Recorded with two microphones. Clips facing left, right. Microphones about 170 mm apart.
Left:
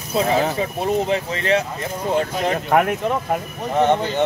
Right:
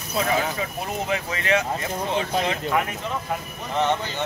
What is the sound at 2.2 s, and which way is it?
Speech, 50° left (ahead or behind).